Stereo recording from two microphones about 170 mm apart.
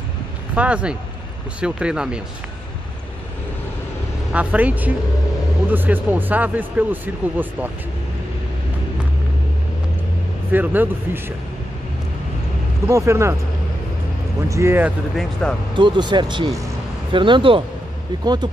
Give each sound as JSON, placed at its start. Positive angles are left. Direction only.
{"t": 0.6, "sound": "speech", "side_deg": -5}
{"t": 4.3, "sound": "speech", "side_deg": -10}
{"t": 10.5, "sound": "speech", "side_deg": -10}
{"t": 12.8, "sound": "speech", "side_deg": -15}
{"t": 14.5, "sound": "speech", "side_deg": -15}
{"t": 15.7, "sound": "speech", "side_deg": -25}